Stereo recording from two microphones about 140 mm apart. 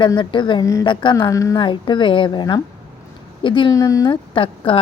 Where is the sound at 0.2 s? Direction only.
35° left (ahead or behind).